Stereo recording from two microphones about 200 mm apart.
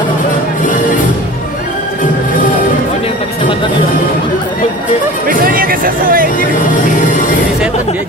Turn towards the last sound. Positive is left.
turn(degrees=-45)  # may be behind; listen again after turning